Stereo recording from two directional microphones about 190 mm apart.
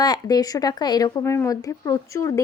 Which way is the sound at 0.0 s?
20° left (ahead or behind).